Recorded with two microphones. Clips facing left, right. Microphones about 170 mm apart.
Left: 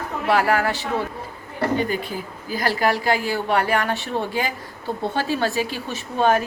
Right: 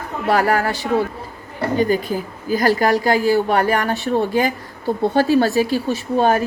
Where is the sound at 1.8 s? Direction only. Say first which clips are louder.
Right 6 dB; 40° right (ahead or behind).